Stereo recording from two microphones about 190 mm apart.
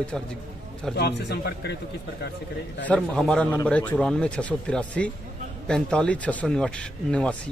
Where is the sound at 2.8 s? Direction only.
5° left (ahead or behind).